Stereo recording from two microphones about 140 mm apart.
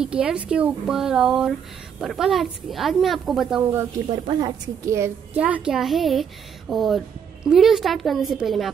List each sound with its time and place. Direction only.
0.0 s a woman's voice: 5° right (ahead or behind)
4.1 s a woman's voice: 30° right (ahead or behind)
5.4 s a woman's voice: 5° right (ahead or behind)